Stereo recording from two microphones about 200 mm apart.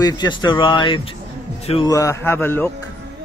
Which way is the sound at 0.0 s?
20° left (ahead or behind).